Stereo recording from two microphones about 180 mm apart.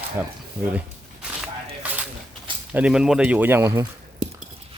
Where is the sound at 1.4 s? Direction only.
5° right (ahead or behind).